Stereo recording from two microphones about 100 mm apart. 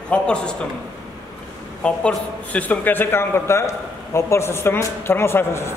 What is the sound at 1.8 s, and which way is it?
A man's voice, 10° left (ahead or behind).